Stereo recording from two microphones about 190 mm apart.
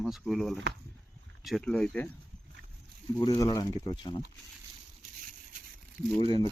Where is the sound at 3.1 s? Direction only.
20° left (ahead or behind).